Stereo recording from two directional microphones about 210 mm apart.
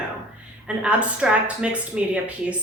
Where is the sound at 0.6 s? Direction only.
5° right (ahead or behind).